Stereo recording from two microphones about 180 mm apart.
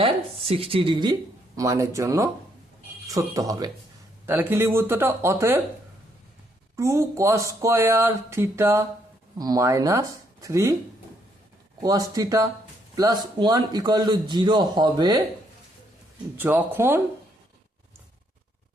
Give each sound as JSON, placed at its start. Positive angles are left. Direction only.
{"t": 0.0, "sound": "a man's voice", "side_deg": -35}
{"t": 1.5, "sound": "a man's voice", "side_deg": -15}
{"t": 6.7, "sound": "speech", "side_deg": -15}
{"t": 11.8, "sound": "a man's voice", "side_deg": -20}
{"t": 16.4, "sound": "speech", "side_deg": -10}